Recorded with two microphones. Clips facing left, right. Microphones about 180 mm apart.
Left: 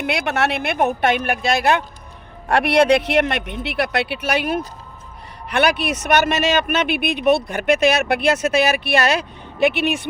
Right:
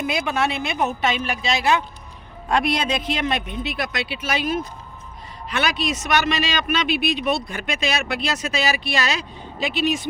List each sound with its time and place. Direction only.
0.0 s speech: 70° left (ahead or behind)
2.5 s speech: 70° left (ahead or behind)